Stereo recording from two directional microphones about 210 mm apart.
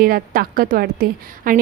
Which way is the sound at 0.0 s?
45° right (ahead or behind).